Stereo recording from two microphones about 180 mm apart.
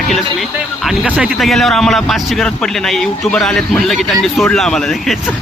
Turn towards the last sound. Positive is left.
turn(degrees=0)  # may be behind; listen again after turning